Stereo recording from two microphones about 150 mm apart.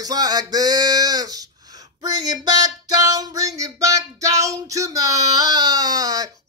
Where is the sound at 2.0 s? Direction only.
25° right (ahead or behind).